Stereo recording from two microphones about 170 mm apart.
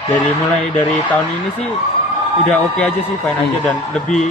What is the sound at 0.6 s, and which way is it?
Speech, 10° left (ahead or behind).